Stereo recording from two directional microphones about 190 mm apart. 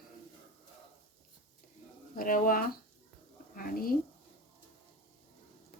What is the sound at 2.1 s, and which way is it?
Bird, 45° left (ahead or behind).